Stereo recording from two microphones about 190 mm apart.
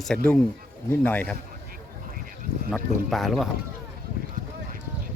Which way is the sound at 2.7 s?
Centre (ahead or behind).